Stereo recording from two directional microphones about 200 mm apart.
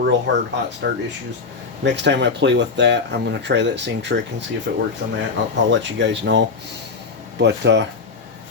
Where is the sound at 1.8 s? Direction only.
60° right (ahead or behind).